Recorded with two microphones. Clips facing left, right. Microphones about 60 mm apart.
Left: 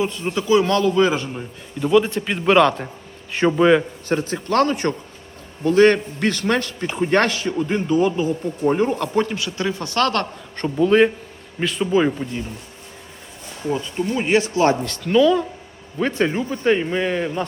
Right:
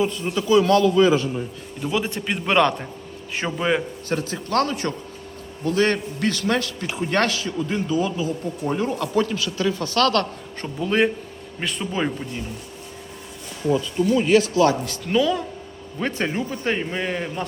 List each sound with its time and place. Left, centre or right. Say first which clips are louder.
0.1 s speech: left 1 dB; left
1.8 s a man's voice: left 8 dB; centre
4.1 s a man's voice: left 3 dB; left
10.6 s a man's voice: left 6 dB; centre
13.9 s speech: right 1 dB; left
14.8 s a man's voice: left 5 dB; centre